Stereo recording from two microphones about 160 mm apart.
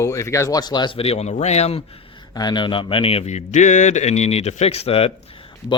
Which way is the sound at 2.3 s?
25° left (ahead or behind).